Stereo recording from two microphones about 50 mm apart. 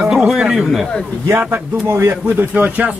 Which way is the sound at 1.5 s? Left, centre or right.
Right.